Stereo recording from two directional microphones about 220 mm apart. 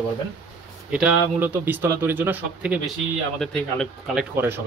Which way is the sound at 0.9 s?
5° right (ahead or behind).